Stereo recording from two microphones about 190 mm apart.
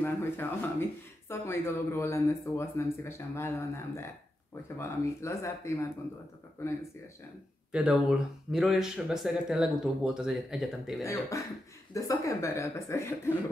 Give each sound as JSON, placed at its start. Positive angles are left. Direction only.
{"t": 0.0, "sound": "speech", "side_deg": 10}
{"t": 7.7, "sound": "speech", "side_deg": -5}
{"t": 11.9, "sound": "speech", "side_deg": 15}